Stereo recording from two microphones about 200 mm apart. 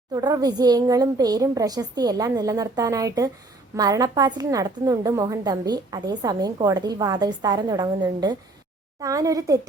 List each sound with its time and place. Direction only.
0.1 s a woman's voice: 20° right (ahead or behind)